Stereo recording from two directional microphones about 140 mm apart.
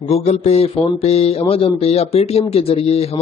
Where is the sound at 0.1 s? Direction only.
50° left (ahead or behind).